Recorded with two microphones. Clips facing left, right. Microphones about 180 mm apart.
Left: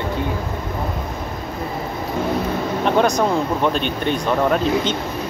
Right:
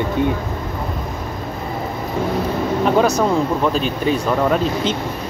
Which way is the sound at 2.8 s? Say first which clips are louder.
Right 1 dB; 5° right (ahead or behind).